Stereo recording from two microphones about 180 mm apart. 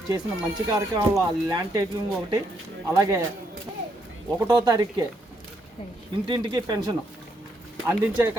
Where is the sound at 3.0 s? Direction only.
15° right (ahead or behind).